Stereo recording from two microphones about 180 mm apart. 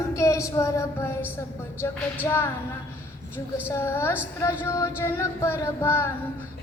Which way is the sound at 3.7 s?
15° left (ahead or behind).